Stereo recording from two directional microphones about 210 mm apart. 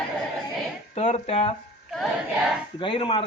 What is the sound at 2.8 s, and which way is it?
Speech, 25° left (ahead or behind).